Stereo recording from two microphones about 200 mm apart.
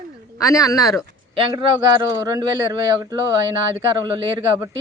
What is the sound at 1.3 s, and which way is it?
Speech, 25° right (ahead or behind).